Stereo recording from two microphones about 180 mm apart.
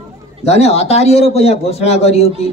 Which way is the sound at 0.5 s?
35° left (ahead or behind).